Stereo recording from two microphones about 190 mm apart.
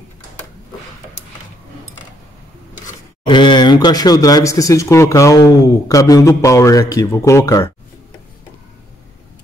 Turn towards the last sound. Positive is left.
turn(degrees=15)  # may be behind; listen again after turning